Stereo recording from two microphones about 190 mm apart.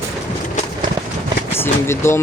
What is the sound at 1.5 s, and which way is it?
Speech, 10° left (ahead or behind).